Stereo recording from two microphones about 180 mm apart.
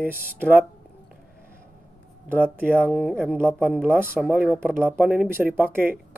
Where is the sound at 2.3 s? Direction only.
10° right (ahead or behind).